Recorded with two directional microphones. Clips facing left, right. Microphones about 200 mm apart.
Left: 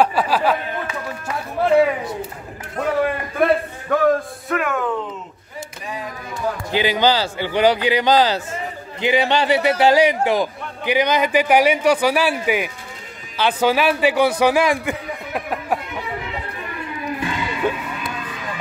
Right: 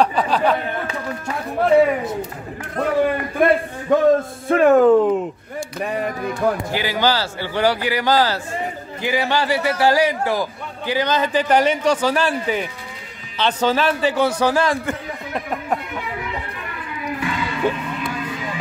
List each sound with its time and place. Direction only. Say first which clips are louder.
0.0 s speech: even; 5° left (ahead or behind)
1.6 s speech: right 1 dB; centre (ahead or behind)
3.9 s a sound: right 3 dB; 20° right (ahead or behind)
4.5 s speech: right 11 dB; 35° right (ahead or behind); by 6.3 s 60° right (ahead or behind)
6.7 s a man's voice: left 2 dB; 20° left (ahead or behind)
17.2 s music: right 2 dB; 20° left (ahead or behind)